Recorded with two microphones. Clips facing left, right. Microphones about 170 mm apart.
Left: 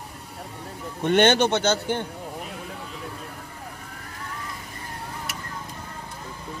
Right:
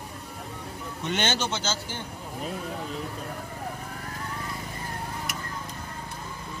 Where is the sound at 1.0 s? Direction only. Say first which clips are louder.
Left 10 dB; 60° left (ahead or behind).